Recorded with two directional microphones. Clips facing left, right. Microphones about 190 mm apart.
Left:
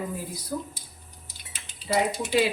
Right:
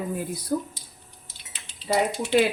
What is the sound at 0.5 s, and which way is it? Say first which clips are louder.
Speech: right 6 dB; 45° right (ahead or behind).